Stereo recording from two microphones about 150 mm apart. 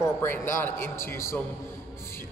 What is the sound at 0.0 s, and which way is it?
A man's voice, 15° left (ahead or behind).